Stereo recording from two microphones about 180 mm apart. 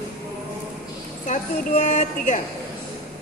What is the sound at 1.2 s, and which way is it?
A woman's voice, 40° left (ahead or behind).